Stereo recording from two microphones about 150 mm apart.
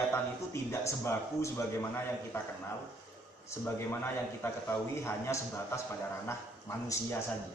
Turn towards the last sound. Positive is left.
turn(degrees=15)  # may be behind; listen again after turning